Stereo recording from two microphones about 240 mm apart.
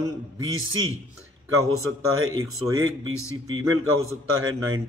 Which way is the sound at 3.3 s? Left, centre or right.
Right.